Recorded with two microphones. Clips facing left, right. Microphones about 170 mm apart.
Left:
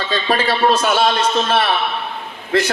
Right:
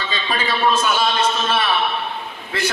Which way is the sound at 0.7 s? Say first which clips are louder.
Left 3 dB; 80° left.